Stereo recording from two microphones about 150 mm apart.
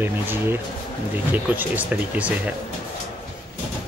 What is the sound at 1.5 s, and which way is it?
Speech, 10° right (ahead or behind).